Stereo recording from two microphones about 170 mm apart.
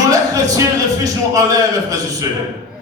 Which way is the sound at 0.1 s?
20° right (ahead or behind).